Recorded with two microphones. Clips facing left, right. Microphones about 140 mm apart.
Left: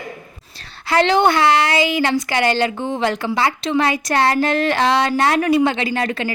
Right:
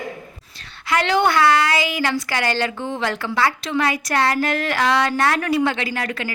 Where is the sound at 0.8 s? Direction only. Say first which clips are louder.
Left 4 dB; 30° left (ahead or behind).